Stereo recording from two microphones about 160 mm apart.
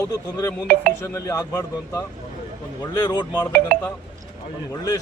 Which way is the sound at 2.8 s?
25° left (ahead or behind).